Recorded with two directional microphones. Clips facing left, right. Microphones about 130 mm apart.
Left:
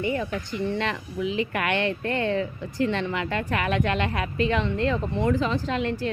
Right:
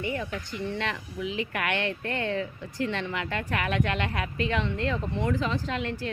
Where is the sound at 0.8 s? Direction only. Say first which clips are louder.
Left 4 dB; 30° left (ahead or behind).